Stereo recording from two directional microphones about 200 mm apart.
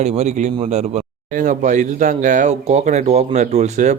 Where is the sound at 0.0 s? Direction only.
35° right (ahead or behind).